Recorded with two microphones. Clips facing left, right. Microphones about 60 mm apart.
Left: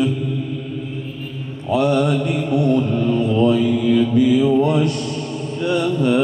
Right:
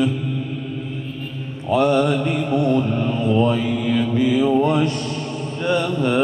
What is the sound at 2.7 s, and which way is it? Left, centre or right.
Mantra, centre.